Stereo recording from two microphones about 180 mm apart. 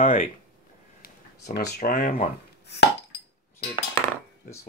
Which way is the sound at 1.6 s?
60° left (ahead or behind).